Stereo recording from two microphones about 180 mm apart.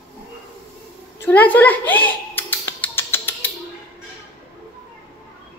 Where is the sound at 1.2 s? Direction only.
10° left (ahead or behind).